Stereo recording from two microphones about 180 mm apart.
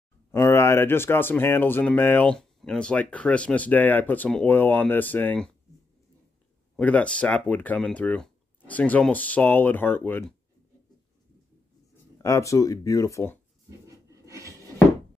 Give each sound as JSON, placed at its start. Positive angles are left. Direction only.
{"t": 0.3, "sound": "speech", "side_deg": 15}
{"t": 6.8, "sound": "speech", "side_deg": 10}
{"t": 12.2, "sound": "speech", "side_deg": 15}
{"t": 13.7, "sound": "rub", "side_deg": -15}